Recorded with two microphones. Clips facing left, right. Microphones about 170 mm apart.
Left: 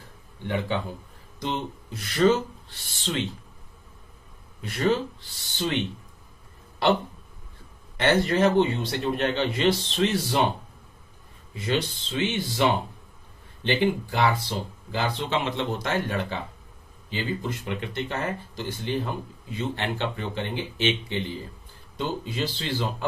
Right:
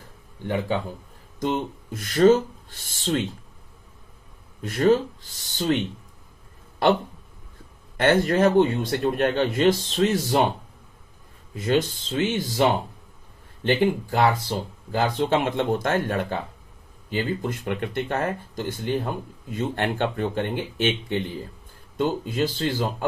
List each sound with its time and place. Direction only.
1.4 s speech: 45° right (ahead or behind)
4.6 s speech: 45° right (ahead or behind)
6.8 s speech: 50° right (ahead or behind)
11.5 s speech: 45° right (ahead or behind)
13.7 s speech: 50° right (ahead or behind)